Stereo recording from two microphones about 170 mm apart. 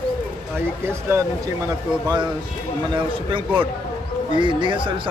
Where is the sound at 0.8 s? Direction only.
15° right (ahead or behind).